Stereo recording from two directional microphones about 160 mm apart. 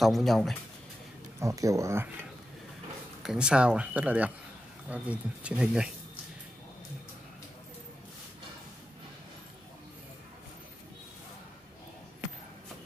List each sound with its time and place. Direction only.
0.0 s speech: centre (ahead or behind)
1.4 s speech: 20° right (ahead or behind)
3.2 s speech: 5° right (ahead or behind)